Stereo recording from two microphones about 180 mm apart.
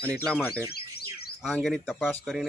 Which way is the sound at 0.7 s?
60° left (ahead or behind).